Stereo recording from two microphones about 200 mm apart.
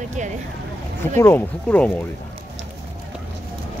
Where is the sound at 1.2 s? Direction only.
10° left (ahead or behind).